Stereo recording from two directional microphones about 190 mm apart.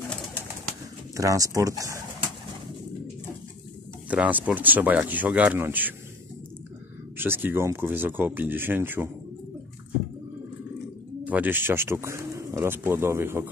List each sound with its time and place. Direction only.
1.1 s speech: 15° right (ahead or behind)
4.1 s speech: 10° right (ahead or behind)
7.2 s speech: 10° right (ahead or behind)
11.2 s speech: 10° right (ahead or behind)